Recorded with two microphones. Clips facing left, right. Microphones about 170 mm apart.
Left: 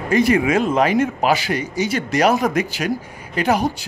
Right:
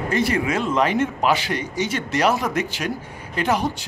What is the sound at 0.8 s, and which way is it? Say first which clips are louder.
A man's voice: left 3 dB; 10° left (ahead or behind).